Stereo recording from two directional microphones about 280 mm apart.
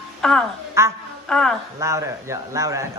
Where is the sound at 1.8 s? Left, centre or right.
Centre.